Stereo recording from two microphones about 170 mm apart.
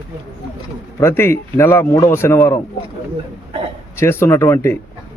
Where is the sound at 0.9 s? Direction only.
15° left (ahead or behind).